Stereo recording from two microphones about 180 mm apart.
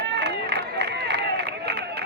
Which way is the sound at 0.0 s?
70° right (ahead or behind).